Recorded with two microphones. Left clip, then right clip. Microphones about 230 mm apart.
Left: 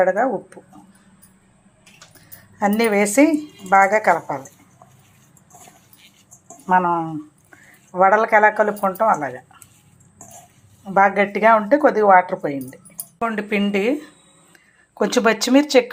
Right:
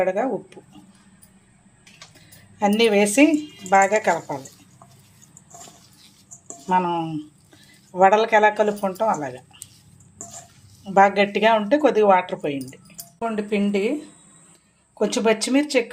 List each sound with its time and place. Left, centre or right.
0.0 s speech: centre
2.6 s speech: centre
6.7 s speech: centre
10.8 s speech: centre
13.1 s speech: centre
14.9 s speech: centre